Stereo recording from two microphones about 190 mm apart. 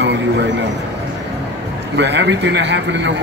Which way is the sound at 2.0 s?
70° right (ahead or behind).